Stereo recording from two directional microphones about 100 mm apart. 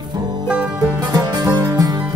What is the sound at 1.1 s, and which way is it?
Music, 45° right (ahead or behind).